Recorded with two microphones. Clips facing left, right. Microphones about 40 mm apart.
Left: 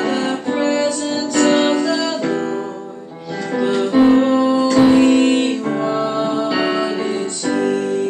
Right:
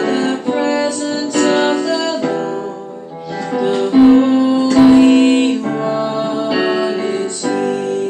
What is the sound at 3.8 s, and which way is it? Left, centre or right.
Music, centre.